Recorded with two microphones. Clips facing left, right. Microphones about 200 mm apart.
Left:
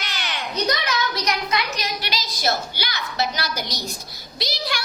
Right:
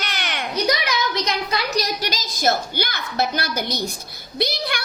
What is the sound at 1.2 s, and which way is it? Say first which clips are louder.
A woman's voice: even; 35° right (ahead or behind).